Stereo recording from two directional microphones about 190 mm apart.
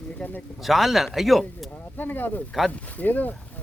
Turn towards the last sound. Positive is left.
turn(degrees=10)  # may be behind; listen again after turning